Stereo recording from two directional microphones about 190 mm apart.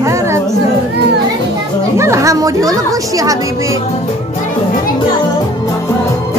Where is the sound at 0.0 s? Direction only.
15° right (ahead or behind).